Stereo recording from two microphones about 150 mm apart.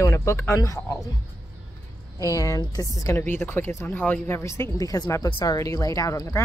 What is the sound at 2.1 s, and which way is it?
Speech, 20° left (ahead or behind).